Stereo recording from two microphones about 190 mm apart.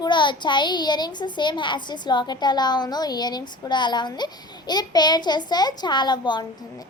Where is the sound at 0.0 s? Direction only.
25° left (ahead or behind).